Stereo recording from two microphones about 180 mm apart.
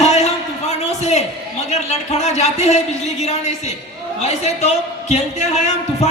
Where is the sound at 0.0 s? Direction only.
35° left (ahead or behind).